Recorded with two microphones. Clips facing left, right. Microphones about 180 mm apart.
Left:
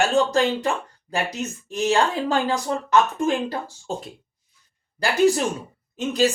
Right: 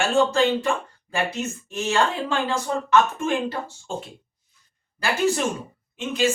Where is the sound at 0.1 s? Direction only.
40° left (ahead or behind).